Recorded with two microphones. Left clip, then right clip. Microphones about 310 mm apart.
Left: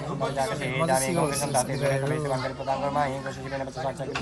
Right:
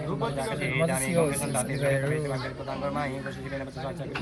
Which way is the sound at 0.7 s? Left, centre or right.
Left.